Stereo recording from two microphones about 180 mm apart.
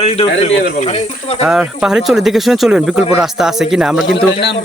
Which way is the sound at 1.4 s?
Centre (ahead or behind).